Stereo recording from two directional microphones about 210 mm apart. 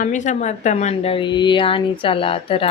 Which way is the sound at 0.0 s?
35° left (ahead or behind).